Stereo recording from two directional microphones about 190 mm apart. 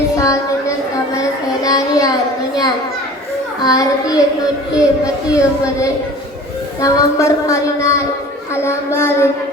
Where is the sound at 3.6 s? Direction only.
20° left (ahead or behind).